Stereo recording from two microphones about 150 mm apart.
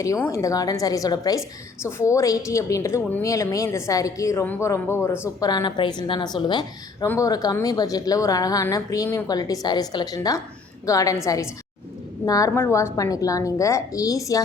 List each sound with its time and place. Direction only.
0.0 s a woman's voice: 20° left (ahead or behind)
5.5 s a woman's voice: 30° left (ahead or behind)